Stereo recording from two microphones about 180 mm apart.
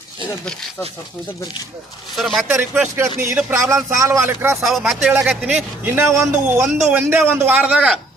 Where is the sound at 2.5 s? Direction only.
10° right (ahead or behind).